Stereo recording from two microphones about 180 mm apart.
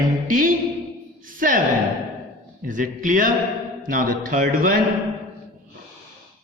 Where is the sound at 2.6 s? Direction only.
45° right (ahead or behind).